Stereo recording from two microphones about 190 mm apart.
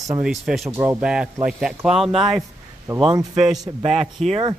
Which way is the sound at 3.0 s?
20° right (ahead or behind).